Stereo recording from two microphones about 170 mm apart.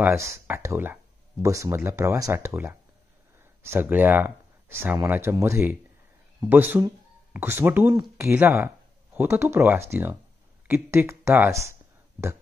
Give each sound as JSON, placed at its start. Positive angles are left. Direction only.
{"t": 0.0, "sound": "speech", "side_deg": -15}